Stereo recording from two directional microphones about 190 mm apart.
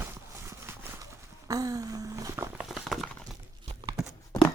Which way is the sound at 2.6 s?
Centre (ahead or behind).